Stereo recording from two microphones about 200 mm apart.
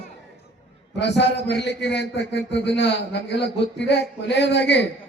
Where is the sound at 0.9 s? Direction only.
60° left (ahead or behind).